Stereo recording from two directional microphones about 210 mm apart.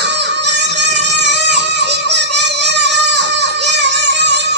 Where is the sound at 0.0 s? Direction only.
55° right (ahead or behind).